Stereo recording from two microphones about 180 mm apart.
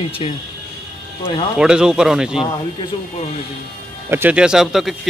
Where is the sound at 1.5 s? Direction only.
5° right (ahead or behind).